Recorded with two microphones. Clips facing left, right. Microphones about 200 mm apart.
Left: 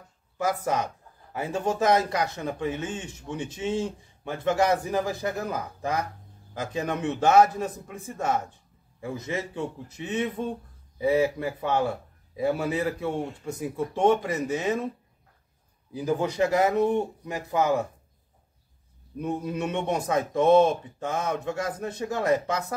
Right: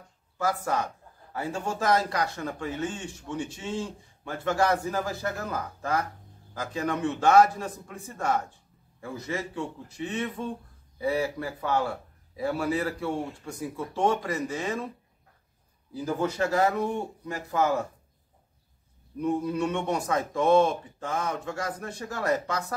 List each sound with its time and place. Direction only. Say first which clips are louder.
0.4 s speech: left 2 dB; 20° left (ahead or behind)
15.9 s speech: left 2 dB; 15° left (ahead or behind)
19.1 s speech: right 2 dB; 20° left (ahead or behind)